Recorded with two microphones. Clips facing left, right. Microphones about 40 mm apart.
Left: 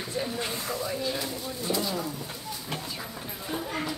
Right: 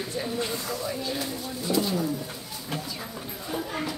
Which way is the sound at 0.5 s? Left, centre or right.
Left.